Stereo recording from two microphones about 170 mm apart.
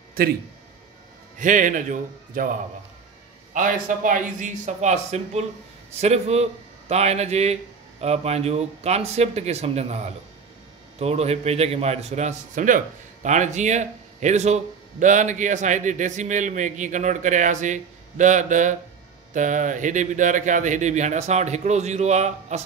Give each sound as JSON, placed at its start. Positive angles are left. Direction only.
{"t": 1.4, "sound": "a man's voice", "side_deg": -50}